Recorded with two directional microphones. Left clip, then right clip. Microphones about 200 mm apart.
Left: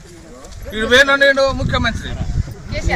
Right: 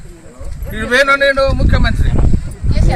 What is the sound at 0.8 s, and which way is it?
Speech, 10° right (ahead or behind).